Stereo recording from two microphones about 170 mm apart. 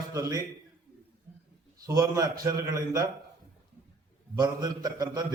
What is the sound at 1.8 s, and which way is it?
A man's voice, 20° right (ahead or behind).